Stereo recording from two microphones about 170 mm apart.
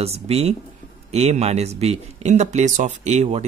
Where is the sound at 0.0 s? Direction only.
35° right (ahead or behind).